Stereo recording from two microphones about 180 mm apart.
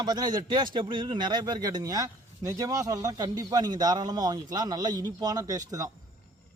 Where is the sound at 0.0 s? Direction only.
25° right (ahead or behind).